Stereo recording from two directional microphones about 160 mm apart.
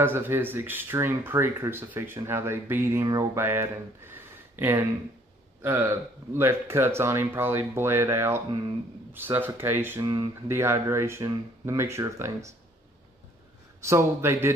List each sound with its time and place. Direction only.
0.0 s speech: 15° right (ahead or behind)
10.0 s speech: 25° right (ahead or behind)
13.8 s speech: 15° right (ahead or behind)